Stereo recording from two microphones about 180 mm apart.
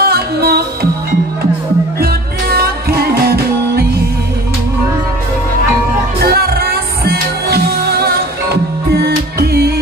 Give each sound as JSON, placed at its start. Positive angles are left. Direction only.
{"t": 0.0, "sound": "music", "side_deg": -60}
{"t": 2.5, "sound": "music", "side_deg": -60}
{"t": 6.3, "sound": "music", "side_deg": -60}